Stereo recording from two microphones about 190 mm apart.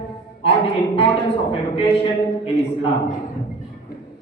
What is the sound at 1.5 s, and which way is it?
A woman's voice, 30° left (ahead or behind).